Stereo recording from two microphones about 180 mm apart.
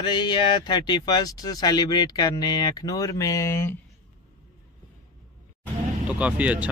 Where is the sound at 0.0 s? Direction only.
25° left (ahead or behind).